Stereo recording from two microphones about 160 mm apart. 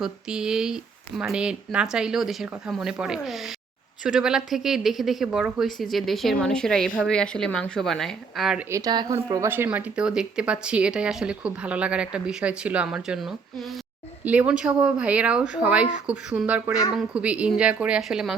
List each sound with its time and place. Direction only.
0.0 s speech: 5° right (ahead or behind)
8.7 s a woman's voice: 25° right (ahead or behind); by 18.3 s 5° right (ahead or behind)